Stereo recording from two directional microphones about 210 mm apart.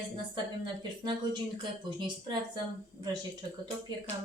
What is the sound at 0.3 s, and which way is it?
Speech, 20° right (ahead or behind).